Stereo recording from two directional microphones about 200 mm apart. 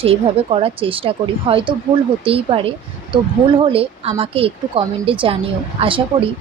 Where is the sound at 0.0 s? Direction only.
30° right (ahead or behind).